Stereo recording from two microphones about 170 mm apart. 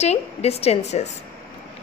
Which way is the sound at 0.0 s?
40° left (ahead or behind).